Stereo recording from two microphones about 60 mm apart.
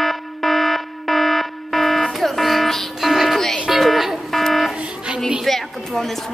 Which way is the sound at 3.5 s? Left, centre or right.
Centre.